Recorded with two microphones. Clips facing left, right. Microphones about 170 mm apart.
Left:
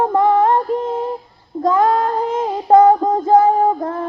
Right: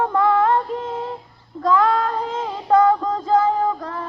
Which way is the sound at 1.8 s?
45° left (ahead or behind).